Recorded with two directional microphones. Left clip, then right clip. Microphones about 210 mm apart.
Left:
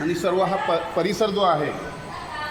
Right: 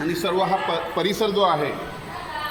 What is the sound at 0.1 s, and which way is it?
A man's voice, 20° left (ahead or behind).